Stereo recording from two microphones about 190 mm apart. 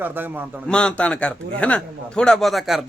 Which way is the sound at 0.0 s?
10° right (ahead or behind).